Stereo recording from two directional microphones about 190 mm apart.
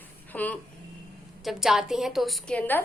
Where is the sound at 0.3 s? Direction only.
10° left (ahead or behind).